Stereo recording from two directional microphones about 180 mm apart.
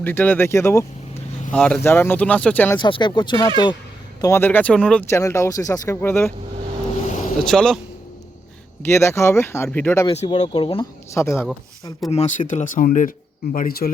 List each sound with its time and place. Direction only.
0.0 s speech: 10° left (ahead or behind)
2.7 s speech: 25° left (ahead or behind)
4.2 s speech: 15° left (ahead or behind)
7.4 s speech: 5° left (ahead or behind)
8.9 s speech: 15° left (ahead or behind)
10.1 s speech: 35° left (ahead or behind)
11.1 s speech: 15° left (ahead or behind)
12.1 s speech: 35° left (ahead or behind); by 13.9 s 55° left (ahead or behind)